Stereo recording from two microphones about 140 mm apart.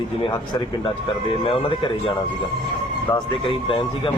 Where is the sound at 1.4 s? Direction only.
40° left (ahead or behind).